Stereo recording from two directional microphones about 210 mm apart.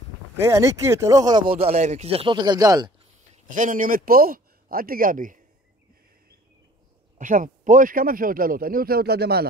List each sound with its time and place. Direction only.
0.4 s speech: 15° right (ahead or behind)
1.6 s speech: 30° right (ahead or behind)
3.3 s speech: 35° right (ahead or behind)
7.2 s a man's voice: 40° right (ahead or behind)